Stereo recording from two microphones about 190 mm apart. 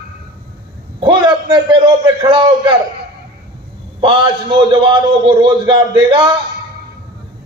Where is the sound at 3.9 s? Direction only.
25° right (ahead or behind).